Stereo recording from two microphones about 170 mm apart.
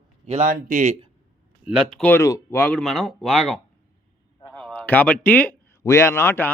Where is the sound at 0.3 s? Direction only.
45° right (ahead or behind).